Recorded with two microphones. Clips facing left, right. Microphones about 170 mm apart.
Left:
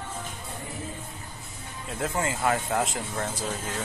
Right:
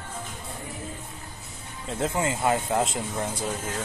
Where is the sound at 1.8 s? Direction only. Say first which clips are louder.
Right 2 dB; 25° right (ahead or behind).